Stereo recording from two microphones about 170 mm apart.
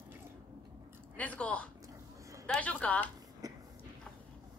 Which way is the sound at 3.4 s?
20° right (ahead or behind).